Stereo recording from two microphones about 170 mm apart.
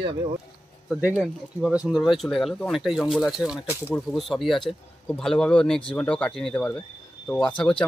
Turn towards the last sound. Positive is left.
turn(degrees=5)  # may be behind; listen again after turning